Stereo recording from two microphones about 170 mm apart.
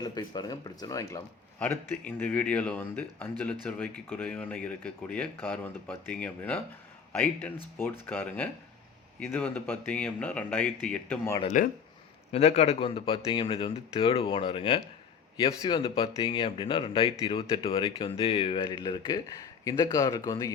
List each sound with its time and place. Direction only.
0.0 s speech: 25° left (ahead or behind)
11.3 s a man's voice: 45° left (ahead or behind); by 20.5 s 20° left (ahead or behind)